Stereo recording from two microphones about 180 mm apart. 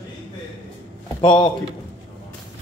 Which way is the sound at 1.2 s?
25° left (ahead or behind).